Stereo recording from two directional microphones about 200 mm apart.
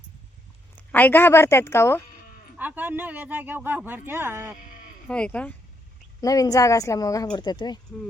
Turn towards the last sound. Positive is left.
turn(degrees=20)  # may be behind; listen again after turning